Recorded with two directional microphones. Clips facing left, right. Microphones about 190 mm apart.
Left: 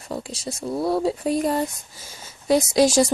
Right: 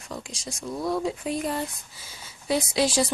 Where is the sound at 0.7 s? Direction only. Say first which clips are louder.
Left 5 dB; 30° left (ahead or behind).